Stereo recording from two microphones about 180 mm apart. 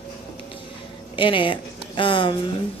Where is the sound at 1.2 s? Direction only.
25° left (ahead or behind).